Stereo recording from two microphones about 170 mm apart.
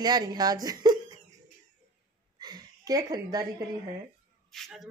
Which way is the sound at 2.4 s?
25° right (ahead or behind).